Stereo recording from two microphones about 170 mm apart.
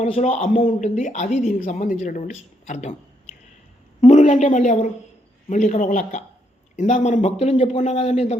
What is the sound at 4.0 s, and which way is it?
A woman's voice, 45° left (ahead or behind).